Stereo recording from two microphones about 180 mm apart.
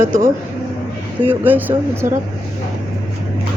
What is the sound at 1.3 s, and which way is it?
Speech, 10° right (ahead or behind).